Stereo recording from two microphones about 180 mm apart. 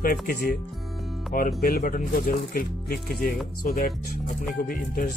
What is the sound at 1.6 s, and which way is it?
Speech, 55° left (ahead or behind).